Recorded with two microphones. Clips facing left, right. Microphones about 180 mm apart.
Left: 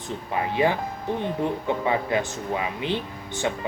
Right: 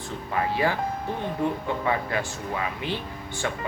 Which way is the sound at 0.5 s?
20° left (ahead or behind).